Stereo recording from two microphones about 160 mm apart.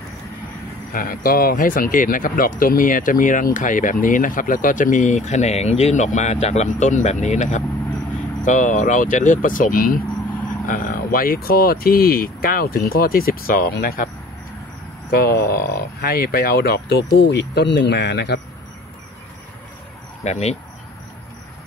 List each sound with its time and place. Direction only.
0.9 s speech: 65° left (ahead or behind)
15.0 s speech: 70° left (ahead or behind)
17.1 s speech: 90° left
20.2 s speech: 45° left (ahead or behind)